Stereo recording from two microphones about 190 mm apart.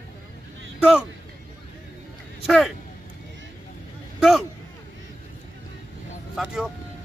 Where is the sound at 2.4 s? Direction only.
Centre (ahead or behind).